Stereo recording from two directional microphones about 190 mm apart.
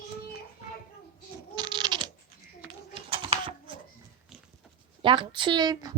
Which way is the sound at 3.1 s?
25° right (ahead or behind).